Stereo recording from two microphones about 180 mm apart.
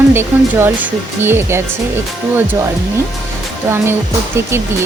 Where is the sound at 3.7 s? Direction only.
15° right (ahead or behind).